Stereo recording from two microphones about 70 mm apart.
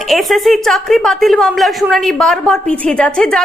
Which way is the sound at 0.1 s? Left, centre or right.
Centre.